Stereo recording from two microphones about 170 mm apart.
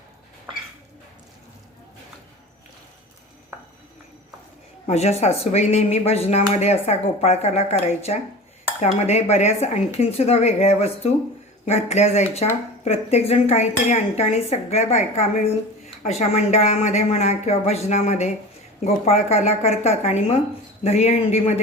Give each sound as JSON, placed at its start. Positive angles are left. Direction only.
{"t": 4.9, "sound": "speech", "side_deg": 40}